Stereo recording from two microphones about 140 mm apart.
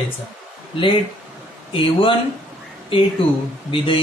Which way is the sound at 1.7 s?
40° left (ahead or behind).